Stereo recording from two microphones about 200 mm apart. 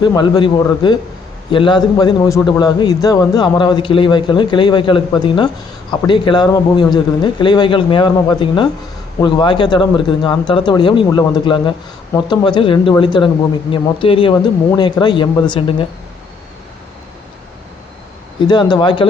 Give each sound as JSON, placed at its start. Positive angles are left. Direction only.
{"t": 0.0, "sound": "a man's voice", "side_deg": 20}
{"t": 18.3, "sound": "a man's voice", "side_deg": 20}